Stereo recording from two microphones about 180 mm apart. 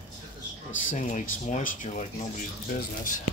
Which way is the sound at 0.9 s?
45° left (ahead or behind).